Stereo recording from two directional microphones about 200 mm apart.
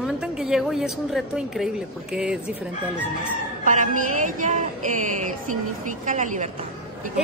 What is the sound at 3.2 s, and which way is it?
A woman's voice, 40° right (ahead or behind).